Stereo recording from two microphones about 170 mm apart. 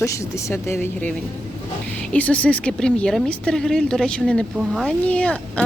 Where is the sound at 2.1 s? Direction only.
10° left (ahead or behind).